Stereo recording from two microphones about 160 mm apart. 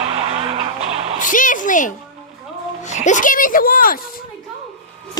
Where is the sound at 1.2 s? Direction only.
55° left (ahead or behind).